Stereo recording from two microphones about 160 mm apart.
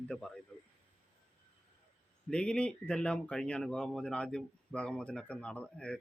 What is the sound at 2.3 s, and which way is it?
Speech, 5° left (ahead or behind).